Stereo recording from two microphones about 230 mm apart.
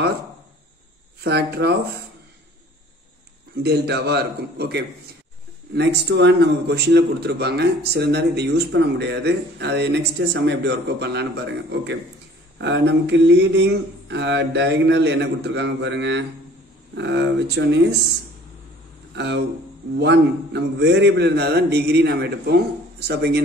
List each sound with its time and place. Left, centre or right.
1.2 s a man's voice: right
3.6 s a man's voice: right
19.1 s a man's voice: right